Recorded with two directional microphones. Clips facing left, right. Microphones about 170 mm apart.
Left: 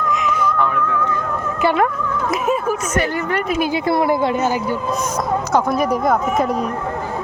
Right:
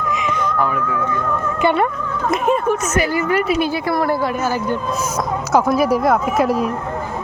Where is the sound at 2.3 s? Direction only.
5° left (ahead or behind).